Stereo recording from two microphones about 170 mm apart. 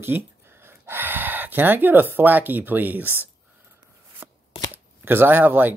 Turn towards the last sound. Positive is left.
turn(degrees=-10)  # may be behind; listen again after turning